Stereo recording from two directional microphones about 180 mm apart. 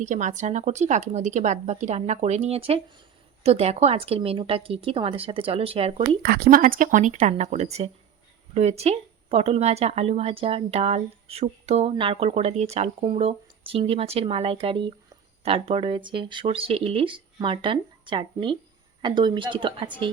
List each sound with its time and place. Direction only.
0.0 s speech: 45° right (ahead or behind)
6.2 s speech: 55° right (ahead or behind); by 20.1 s 30° right (ahead or behind)